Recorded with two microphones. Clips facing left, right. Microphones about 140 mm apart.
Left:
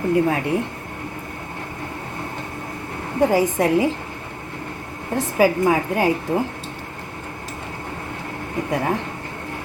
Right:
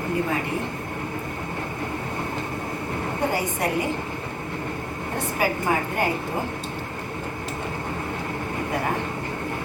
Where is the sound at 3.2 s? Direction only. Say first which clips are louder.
Left 8 dB; 90° left.